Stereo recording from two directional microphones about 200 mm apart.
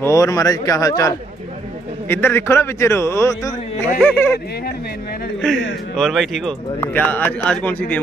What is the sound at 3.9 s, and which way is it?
Speech, 5° left (ahead or behind).